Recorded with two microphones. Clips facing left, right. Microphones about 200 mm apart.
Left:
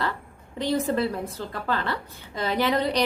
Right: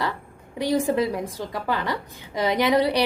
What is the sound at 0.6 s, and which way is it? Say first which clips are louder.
A woman's voice: right 2 dB; 10° right (ahead or behind).